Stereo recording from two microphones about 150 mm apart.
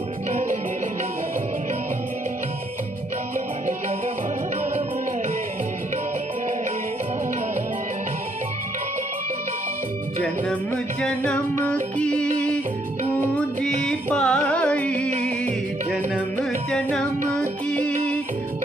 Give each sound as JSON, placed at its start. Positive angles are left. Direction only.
{"t": 0.3, "sound": "music", "side_deg": -55}
{"t": 11.0, "sound": "music", "side_deg": 5}
{"t": 13.6, "sound": "music", "side_deg": 5}
{"t": 17.6, "sound": "music", "side_deg": 10}